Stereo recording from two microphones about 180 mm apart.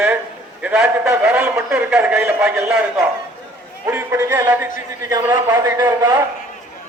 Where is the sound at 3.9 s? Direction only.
15° right (ahead or behind).